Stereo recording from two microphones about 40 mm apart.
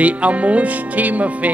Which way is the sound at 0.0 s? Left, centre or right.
Right.